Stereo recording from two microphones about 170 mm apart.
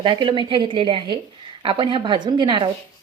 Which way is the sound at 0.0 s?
30° right (ahead or behind).